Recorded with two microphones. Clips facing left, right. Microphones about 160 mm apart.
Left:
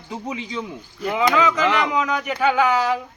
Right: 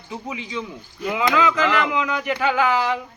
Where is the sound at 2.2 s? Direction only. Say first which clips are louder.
Left 1 dB; centre (ahead or behind).